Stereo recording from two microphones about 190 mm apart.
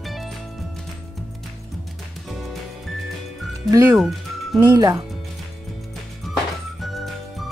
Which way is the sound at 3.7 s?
15° right (ahead or behind).